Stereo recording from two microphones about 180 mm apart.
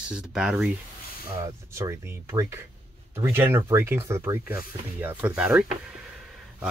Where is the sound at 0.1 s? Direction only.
5° right (ahead or behind).